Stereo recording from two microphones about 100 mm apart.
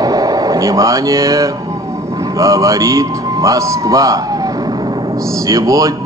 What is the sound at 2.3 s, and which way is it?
A man's voice, 35° right (ahead or behind).